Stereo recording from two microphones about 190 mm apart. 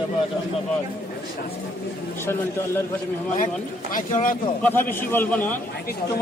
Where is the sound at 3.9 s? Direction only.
45° left (ahead or behind).